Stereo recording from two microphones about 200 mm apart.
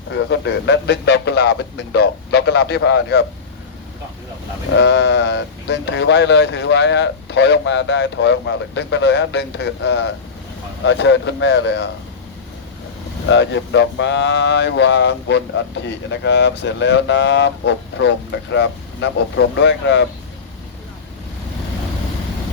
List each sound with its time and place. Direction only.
0.1 s speech: 60° left (ahead or behind)
4.8 s speech: 60° left (ahead or behind)
13.3 s speech: 65° left (ahead or behind)